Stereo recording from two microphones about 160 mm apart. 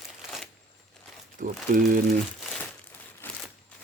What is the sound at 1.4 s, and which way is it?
Speech, 50° right (ahead or behind).